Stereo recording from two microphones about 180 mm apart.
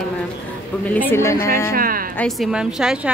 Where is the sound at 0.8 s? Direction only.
10° left (ahead or behind).